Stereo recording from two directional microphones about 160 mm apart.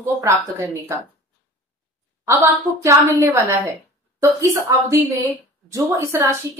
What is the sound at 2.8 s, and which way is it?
A woman's voice, 20° right (ahead or behind).